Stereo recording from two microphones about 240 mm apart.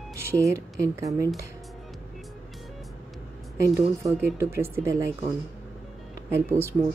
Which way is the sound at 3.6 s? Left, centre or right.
Centre.